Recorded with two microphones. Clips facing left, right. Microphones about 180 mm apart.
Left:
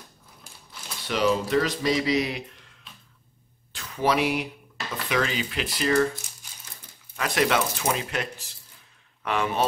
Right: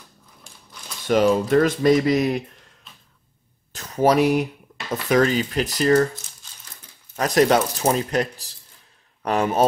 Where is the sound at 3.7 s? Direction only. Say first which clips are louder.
Right 6 dB; 40° right (ahead or behind).